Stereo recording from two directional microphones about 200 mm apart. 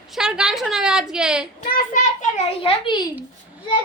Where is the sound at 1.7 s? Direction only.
40° left (ahead or behind).